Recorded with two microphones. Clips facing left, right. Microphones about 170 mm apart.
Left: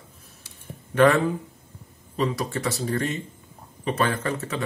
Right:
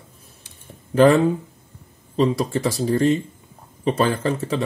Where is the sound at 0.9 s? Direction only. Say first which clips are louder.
Right 4 dB; 30° right (ahead or behind).